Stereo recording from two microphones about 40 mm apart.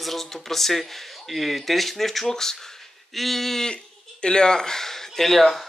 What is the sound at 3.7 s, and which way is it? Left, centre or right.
Speech, left.